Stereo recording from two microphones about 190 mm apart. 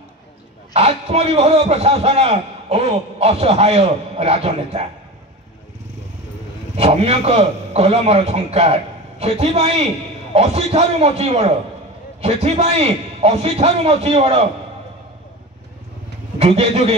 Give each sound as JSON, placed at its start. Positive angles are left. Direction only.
{"t": 0.7, "sound": "a man's voice", "side_deg": -30}
{"t": 6.8, "sound": "a man's voice", "side_deg": -30}
{"t": 16.3, "sound": "a man's voice", "side_deg": -30}